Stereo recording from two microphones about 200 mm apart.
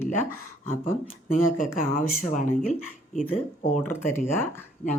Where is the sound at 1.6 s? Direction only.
45° left (ahead or behind).